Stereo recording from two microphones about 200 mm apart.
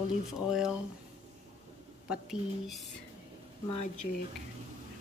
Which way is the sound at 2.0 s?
5° right (ahead or behind).